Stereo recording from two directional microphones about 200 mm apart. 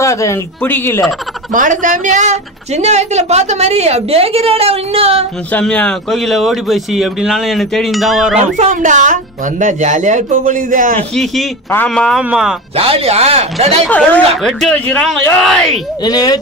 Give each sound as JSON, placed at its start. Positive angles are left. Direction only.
{"t": 0.0, "sound": "speech", "side_deg": 15}
{"t": 1.5, "sound": "a woman's voice", "side_deg": -40}
{"t": 5.5, "sound": "speech", "side_deg": 5}
{"t": 8.5, "sound": "a woman's voice", "side_deg": -40}
{"t": 11.1, "sound": "speech", "side_deg": 5}
{"t": 12.7, "sound": "a woman's voice", "side_deg": -30}
{"t": 13.8, "sound": "speech", "side_deg": 5}
{"t": 16.0, "sound": "speech", "side_deg": 20}